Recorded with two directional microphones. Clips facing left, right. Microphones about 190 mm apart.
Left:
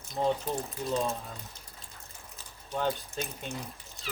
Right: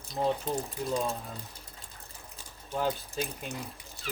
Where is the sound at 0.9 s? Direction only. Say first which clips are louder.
Left 1 dB; 10° right (ahead or behind).